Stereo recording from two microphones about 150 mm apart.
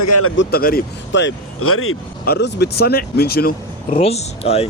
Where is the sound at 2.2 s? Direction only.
90° left.